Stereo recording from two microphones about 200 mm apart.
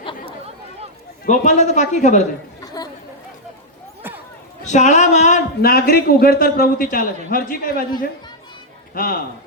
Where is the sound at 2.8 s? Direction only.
20° left (ahead or behind).